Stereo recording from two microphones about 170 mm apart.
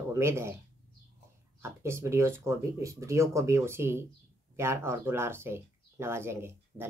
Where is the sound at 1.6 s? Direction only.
15° right (ahead or behind).